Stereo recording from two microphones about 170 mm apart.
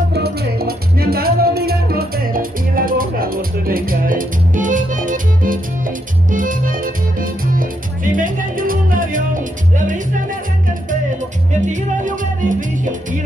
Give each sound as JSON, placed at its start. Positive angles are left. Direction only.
{"t": 0.1, "sound": "music", "side_deg": -70}
{"t": 11.6, "sound": "music", "side_deg": -45}